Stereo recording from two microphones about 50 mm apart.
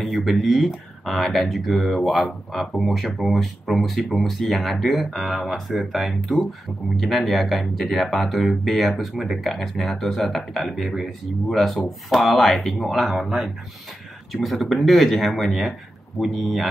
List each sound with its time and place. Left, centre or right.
0.0 s speech: centre